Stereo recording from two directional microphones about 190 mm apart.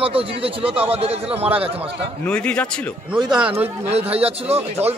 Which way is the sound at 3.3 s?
5° right (ahead or behind).